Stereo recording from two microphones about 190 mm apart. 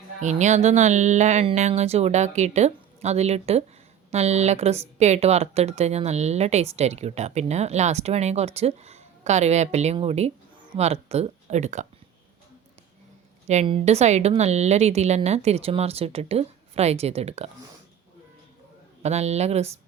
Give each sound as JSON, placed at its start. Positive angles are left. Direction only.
{"t": 0.2, "sound": "speech", "side_deg": -40}
{"t": 13.5, "sound": "speech", "side_deg": -35}
{"t": 19.0, "sound": "speech", "side_deg": -35}